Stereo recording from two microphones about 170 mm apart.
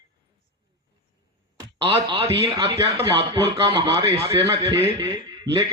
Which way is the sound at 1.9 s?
30° right (ahead or behind).